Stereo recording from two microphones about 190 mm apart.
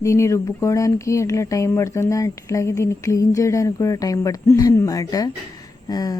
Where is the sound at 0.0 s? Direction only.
15° left (ahead or behind).